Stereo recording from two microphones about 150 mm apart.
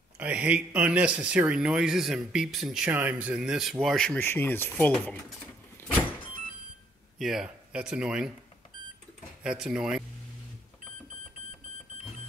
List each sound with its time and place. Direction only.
0.2 s speech: 10° right (ahead or behind)
4.2 s speech: 15° left (ahead or behind)
7.2 s speech: centre (ahead or behind)
9.4 s speech: 5° right (ahead or behind)